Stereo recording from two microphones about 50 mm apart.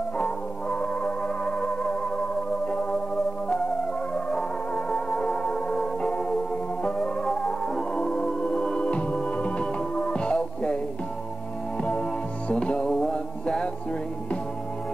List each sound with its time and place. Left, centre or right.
0.2 s music: left
4.7 s music: centre
11.8 s music: left